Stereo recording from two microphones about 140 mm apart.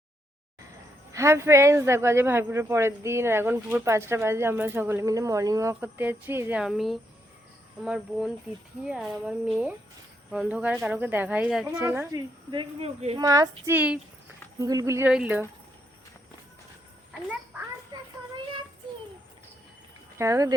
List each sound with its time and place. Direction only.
1.1 s speech: 20° right (ahead or behind)
6.6 s speech: centre (ahead or behind)
11.6 s speech: 15° right (ahead or behind)
12.5 s speech: 35° right (ahead or behind)
13.1 s speech: 25° right (ahead or behind)
13.7 s speech: 10° right (ahead or behind)
14.6 s speech: 25° right (ahead or behind)
15.1 s speech: 10° right (ahead or behind)
20.1 s speech: 20° right (ahead or behind)